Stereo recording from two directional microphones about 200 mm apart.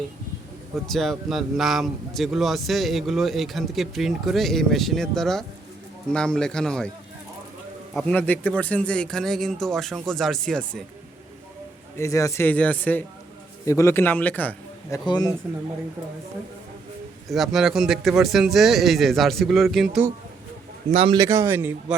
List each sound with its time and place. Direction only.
0.9 s speech: centre (ahead or behind)
7.9 s speech: 5° left (ahead or behind)
11.9 s a man's voice: 15° left (ahead or behind)
17.2 s speech: centre (ahead or behind)
20.9 s a man's voice: 30° right (ahead or behind)
21.2 s speech: 15° right (ahead or behind)